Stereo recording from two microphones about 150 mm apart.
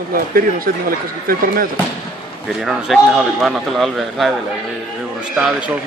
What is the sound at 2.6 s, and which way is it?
A man's voice, centre (ahead or behind).